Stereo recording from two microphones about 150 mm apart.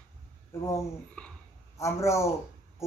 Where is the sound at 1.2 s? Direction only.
5° left (ahead or behind).